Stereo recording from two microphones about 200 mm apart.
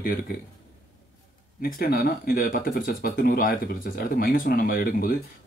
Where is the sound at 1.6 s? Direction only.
50° left (ahead or behind).